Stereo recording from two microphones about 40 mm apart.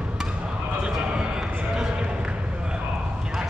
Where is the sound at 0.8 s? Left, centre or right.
Centre.